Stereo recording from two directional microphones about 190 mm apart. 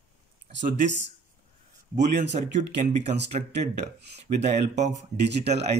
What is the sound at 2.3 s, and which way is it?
Speech, 35° right (ahead or behind).